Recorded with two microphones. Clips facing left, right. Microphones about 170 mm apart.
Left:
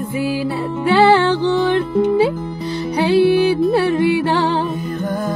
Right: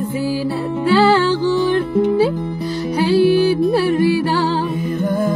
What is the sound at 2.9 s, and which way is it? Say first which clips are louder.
Music: even; 20° left (ahead or behind).